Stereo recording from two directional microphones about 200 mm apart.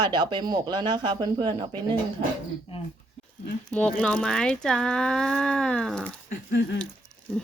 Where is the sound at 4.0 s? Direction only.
5° left (ahead or behind).